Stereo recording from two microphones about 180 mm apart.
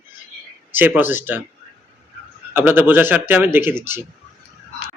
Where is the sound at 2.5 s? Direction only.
10° right (ahead or behind).